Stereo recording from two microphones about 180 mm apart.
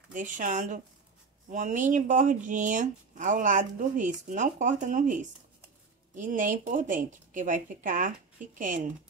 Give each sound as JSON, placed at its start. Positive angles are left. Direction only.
{"t": 0.1, "sound": "speech", "side_deg": -45}